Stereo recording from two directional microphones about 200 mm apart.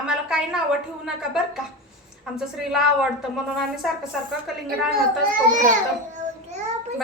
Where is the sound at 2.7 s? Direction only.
Centre (ahead or behind).